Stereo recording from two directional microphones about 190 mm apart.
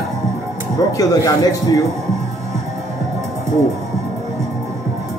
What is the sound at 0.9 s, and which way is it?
Speech, 20° left (ahead or behind).